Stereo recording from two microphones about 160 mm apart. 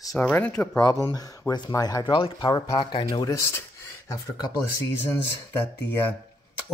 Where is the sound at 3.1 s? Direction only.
20° left (ahead or behind).